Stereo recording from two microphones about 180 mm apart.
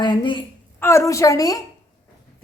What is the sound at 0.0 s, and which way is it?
Speech, 25° left (ahead or behind).